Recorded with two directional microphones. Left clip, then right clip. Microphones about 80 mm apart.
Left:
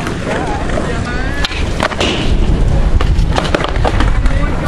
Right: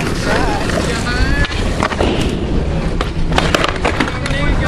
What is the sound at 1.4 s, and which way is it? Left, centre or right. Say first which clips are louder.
Skateboard: left 1 dB; left.